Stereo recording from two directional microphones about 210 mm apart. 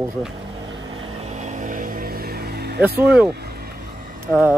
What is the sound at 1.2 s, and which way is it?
Vehicle, 35° right (ahead or behind).